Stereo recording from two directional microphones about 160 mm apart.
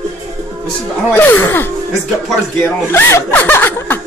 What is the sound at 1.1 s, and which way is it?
Speech, 15° left (ahead or behind).